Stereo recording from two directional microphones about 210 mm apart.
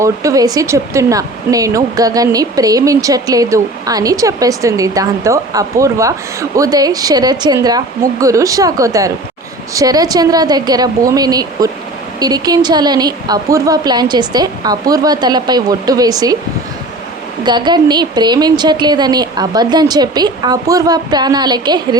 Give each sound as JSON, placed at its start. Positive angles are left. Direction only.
{"t": 0.0, "sound": "a woman's voice", "side_deg": -15}
{"t": 17.4, "sound": "a woman's voice", "side_deg": -20}